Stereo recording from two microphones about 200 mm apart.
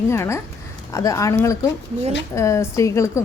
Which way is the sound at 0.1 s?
15° left (ahead or behind).